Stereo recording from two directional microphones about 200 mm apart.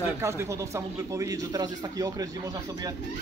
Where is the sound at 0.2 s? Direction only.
15° right (ahead or behind).